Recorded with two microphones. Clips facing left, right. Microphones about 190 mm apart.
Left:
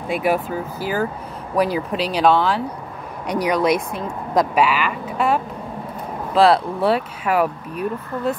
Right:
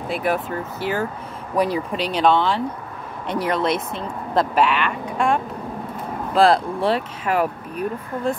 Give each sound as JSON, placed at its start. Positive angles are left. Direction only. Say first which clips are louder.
{"t": 0.1, "sound": "speech", "louder": "left 3 dB", "side_deg": 5}
{"t": 3.3, "sound": "speech", "louder": "left 3 dB", "side_deg": -25}
{"t": 4.3, "sound": "speech", "louder": "left 1 dB", "side_deg": 10}